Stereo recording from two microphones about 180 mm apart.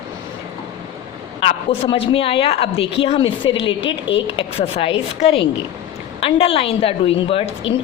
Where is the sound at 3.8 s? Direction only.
90° left.